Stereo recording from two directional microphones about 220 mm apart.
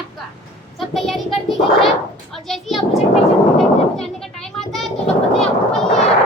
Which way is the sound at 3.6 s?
Centre (ahead or behind).